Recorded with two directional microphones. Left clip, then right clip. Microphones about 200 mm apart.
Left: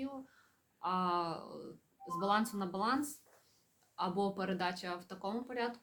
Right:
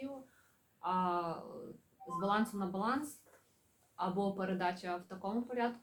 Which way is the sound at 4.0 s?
55° left (ahead or behind).